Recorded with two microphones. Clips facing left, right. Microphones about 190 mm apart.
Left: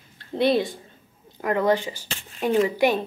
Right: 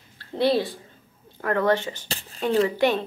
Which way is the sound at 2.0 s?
35° right (ahead or behind).